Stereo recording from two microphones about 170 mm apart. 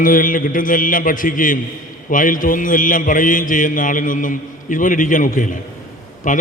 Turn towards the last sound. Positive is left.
turn(degrees=50)  # may be behind; listen again after turning